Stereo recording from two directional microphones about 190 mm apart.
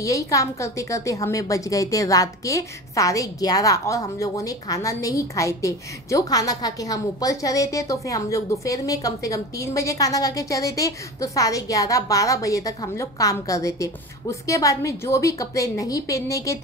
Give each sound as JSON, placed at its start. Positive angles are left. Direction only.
{"t": 0.0, "sound": "a woman's voice", "side_deg": 15}